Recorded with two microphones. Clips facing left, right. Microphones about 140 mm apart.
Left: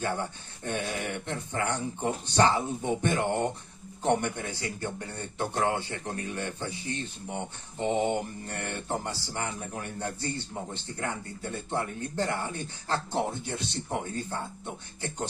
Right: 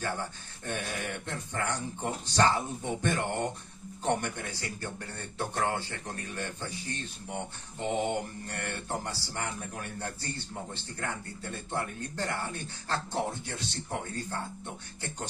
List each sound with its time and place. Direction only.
0.0 s speech: 20° left (ahead or behind)